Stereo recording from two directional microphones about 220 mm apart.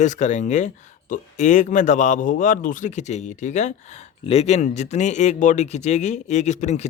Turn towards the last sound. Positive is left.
turn(degrees=30)  # may be behind; listen again after turning